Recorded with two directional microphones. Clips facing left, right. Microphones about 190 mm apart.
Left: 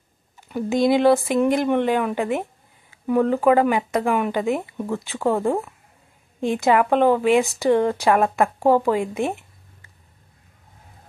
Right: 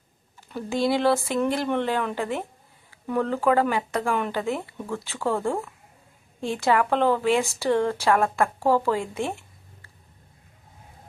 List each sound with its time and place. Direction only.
0.4 s a woman's voice: 15° left (ahead or behind)